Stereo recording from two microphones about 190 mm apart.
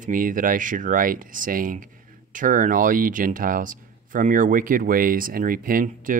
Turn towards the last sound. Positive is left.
turn(degrees=-45)  # may be behind; listen again after turning